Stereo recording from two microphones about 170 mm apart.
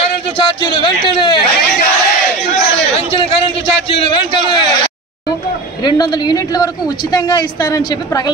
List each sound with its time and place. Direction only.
0.4 s a man's voice: 30° left (ahead or behind)
3.1 s a sound: 30° left (ahead or behind)
5.9 s a woman's voice: 25° left (ahead or behind)